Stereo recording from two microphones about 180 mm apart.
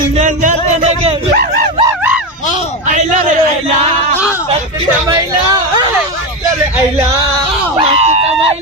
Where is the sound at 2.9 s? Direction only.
45° right (ahead or behind).